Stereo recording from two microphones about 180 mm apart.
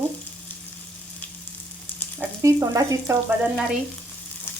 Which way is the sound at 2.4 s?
20° right (ahead or behind).